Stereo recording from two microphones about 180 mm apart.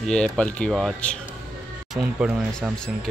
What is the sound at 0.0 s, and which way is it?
Speech, 5° left (ahead or behind).